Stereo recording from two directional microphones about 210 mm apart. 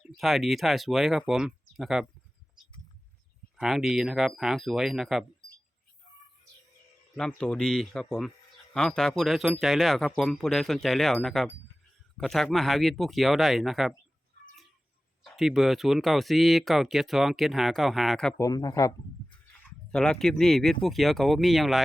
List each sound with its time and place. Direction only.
0.2 s speech: centre (ahead or behind)
3.6 s speech: centre (ahead or behind)
7.2 s speech: 5° left (ahead or behind)
15.2 s speech: centre (ahead or behind)
18.3 s speech: 15° left (ahead or behind)
19.9 s speech: 5° left (ahead or behind)